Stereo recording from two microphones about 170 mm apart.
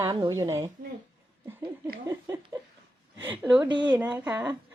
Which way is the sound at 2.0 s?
15° right (ahead or behind).